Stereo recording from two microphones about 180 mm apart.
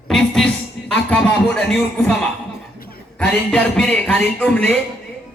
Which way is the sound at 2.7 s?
55° left (ahead or behind).